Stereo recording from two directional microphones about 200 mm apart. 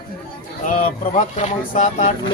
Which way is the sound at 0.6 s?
35° left (ahead or behind).